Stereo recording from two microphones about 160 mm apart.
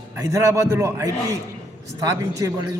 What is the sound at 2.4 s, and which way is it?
Speech, 20° right (ahead or behind).